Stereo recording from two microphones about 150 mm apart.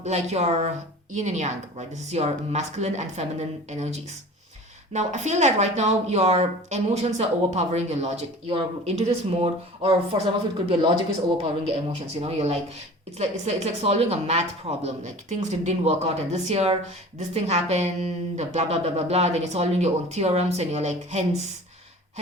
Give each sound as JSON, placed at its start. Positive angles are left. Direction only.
{"t": 0.0, "sound": "speech", "side_deg": -45}
{"t": 4.9, "sound": "speech", "side_deg": -50}